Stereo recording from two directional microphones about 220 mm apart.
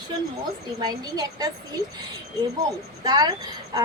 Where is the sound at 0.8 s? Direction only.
20° right (ahead or behind).